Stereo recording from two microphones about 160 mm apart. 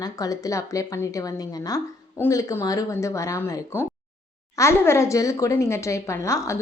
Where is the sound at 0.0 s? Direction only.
20° left (ahead or behind).